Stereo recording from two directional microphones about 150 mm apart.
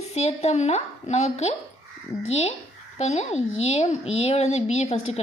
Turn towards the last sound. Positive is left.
turn(degrees=45)  # may be behind; listen again after turning